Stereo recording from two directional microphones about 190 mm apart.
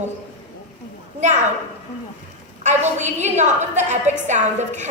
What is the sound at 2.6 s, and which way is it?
A woman's voice, 40° right (ahead or behind).